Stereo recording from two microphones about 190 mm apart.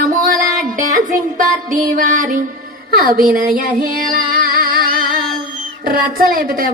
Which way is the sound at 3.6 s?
45° right (ahead or behind).